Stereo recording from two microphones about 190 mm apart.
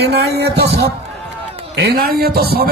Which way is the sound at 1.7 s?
55° right (ahead or behind).